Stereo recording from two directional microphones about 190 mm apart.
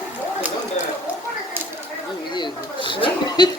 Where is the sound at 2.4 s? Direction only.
25° left (ahead or behind).